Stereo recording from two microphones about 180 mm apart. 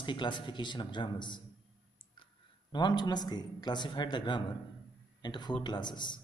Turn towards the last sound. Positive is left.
turn(degrees=25)  # may be behind; listen again after turning